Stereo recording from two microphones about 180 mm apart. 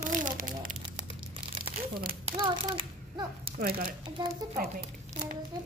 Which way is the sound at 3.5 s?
55° right (ahead or behind).